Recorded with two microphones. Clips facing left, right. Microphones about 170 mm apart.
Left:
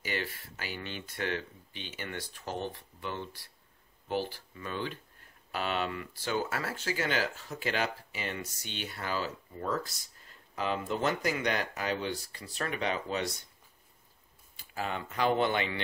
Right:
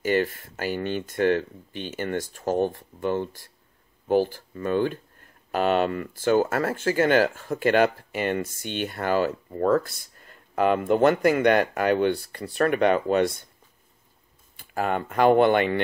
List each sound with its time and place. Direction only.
0.0 s speech: 45° right (ahead or behind)
14.6 s speech: 55° right (ahead or behind)